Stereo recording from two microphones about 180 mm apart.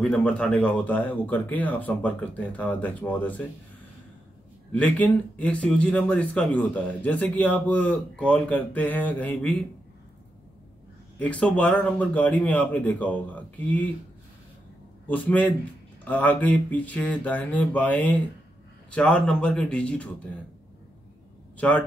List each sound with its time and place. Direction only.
0.0 s a man's voice: 5° left (ahead or behind)
4.7 s a man's voice: 10° left (ahead or behind)
11.1 s a man's voice: 5° left (ahead or behind)
15.0 s a man's voice: 10° left (ahead or behind)
21.5 s a man's voice: 10° left (ahead or behind)